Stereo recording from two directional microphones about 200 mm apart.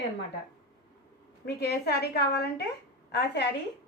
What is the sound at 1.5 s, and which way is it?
A woman's voice, 50° left (ahead or behind).